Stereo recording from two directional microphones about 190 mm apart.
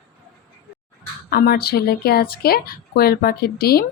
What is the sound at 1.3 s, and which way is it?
Speech, 55° left (ahead or behind).